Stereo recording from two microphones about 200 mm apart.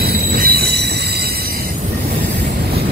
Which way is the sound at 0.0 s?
50° right (ahead or behind).